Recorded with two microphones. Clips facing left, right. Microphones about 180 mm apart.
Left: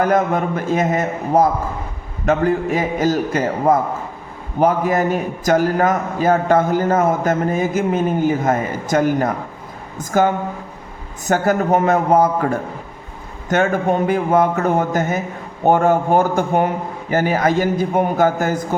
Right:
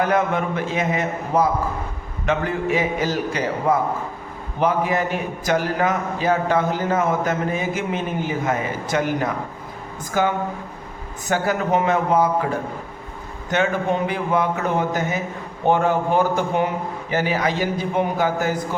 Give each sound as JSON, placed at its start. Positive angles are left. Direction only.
{"t": 0.0, "sound": "a man's voice", "side_deg": 40}
{"t": 13.5, "sound": "a man's voice", "side_deg": 45}